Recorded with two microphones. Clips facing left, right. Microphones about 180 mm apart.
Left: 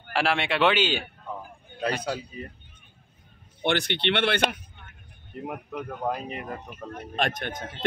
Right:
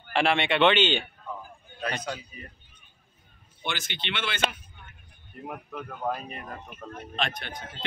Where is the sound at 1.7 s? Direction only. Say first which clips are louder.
Left 4 dB; 60° left (ahead or behind).